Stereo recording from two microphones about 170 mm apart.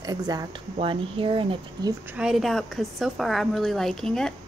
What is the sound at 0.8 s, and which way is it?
Speech, 30° right (ahead or behind).